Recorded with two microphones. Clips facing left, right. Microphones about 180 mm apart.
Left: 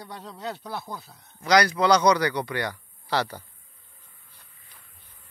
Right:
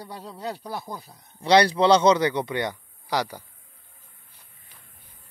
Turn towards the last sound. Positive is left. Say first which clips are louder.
# even
turn(degrees=-15)  # may be behind; listen again after turning